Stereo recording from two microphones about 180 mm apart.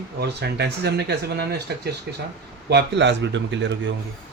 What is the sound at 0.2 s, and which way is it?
Speech, 65° right (ahead or behind).